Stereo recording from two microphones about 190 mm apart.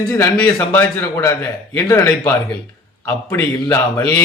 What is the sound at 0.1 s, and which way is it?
Speech, 10° left (ahead or behind).